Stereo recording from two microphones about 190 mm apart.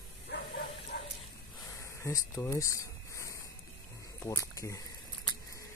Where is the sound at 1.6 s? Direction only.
15° left (ahead or behind).